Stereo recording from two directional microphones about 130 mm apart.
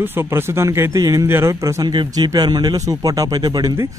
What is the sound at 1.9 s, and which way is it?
A man's voice, 35° right (ahead or behind).